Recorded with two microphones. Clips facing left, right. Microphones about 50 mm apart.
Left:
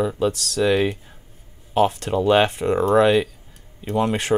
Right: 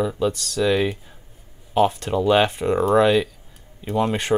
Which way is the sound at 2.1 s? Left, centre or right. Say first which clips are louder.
Left 1 dB; left.